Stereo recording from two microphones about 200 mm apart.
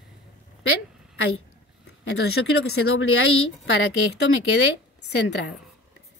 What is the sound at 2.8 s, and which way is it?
Speech, 90° left.